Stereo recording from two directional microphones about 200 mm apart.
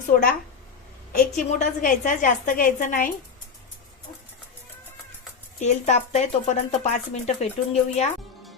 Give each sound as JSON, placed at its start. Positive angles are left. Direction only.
{"t": 1.1, "sound": "speech", "side_deg": 35}
{"t": 5.5, "sound": "speech", "side_deg": 35}